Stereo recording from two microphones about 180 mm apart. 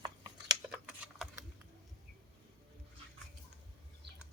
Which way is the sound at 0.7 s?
5° right (ahead or behind).